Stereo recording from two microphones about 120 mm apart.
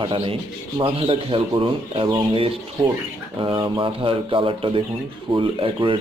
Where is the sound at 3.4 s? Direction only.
40° right (ahead or behind).